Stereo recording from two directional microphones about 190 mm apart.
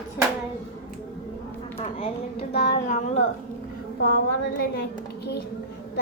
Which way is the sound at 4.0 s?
60° left (ahead or behind).